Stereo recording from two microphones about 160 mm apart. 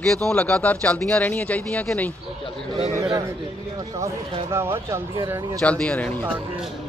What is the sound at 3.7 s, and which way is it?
Speech, 20° right (ahead or behind).